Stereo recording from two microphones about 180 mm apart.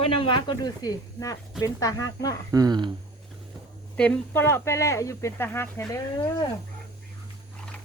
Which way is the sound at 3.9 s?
5° left (ahead or behind).